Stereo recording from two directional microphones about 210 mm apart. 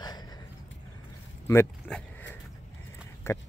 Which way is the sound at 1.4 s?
10° left (ahead or behind).